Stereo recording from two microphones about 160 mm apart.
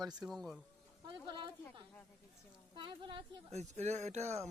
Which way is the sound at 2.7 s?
30° right (ahead or behind).